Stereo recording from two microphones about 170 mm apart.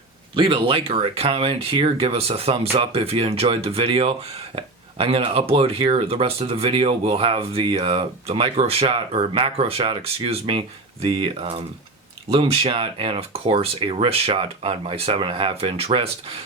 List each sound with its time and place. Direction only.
0.3 s speech: 30° right (ahead or behind)